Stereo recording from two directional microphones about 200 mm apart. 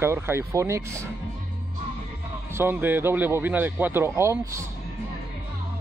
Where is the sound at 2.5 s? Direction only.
10° right (ahead or behind).